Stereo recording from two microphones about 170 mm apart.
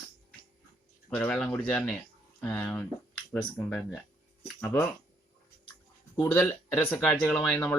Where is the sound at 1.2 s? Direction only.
5° left (ahead or behind).